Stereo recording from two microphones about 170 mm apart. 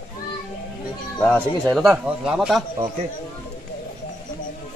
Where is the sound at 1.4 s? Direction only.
5° left (ahead or behind).